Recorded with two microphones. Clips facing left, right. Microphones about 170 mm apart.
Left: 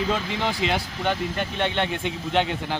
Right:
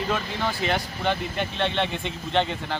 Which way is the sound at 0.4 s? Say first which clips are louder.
Even; 5° left (ahead or behind).